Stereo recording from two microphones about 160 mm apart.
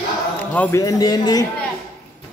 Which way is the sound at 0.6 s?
15° left (ahead or behind).